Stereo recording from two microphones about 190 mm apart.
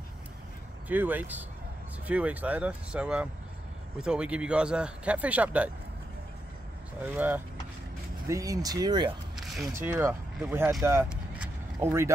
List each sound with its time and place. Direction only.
0.8 s speech: 10° right (ahead or behind)
7.2 s speech: 10° right (ahead or behind)